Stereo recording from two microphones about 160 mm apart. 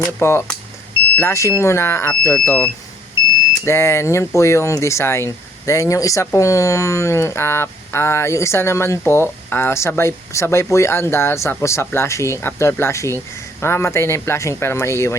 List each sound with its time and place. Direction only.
0.2 s speech: 15° left (ahead or behind)
3.7 s speech: 15° left (ahead or behind)